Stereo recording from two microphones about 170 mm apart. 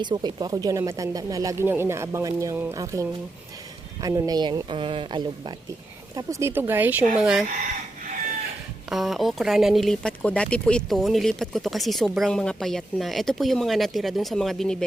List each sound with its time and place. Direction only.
0.0 s speech: 25° right (ahead or behind)
6.1 s speech: 15° right (ahead or behind)
8.9 s speech: centre (ahead or behind)